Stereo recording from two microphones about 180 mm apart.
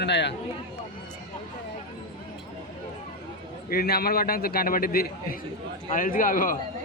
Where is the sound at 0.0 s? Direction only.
75° left (ahead or behind).